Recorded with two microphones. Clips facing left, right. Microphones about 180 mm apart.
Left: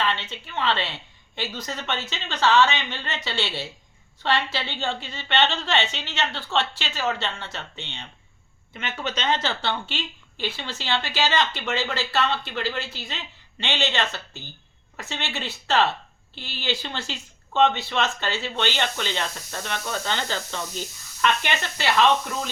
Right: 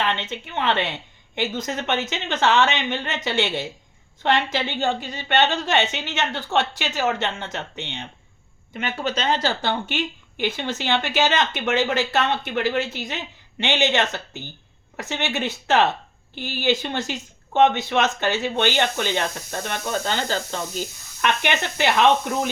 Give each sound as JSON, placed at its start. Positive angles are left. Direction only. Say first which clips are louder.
{"t": 0.0, "sound": "a woman's voice", "louder": "right 2 dB", "side_deg": -20}
{"t": 21.2, "sound": "a woman's voice", "louder": "right 2 dB", "side_deg": -15}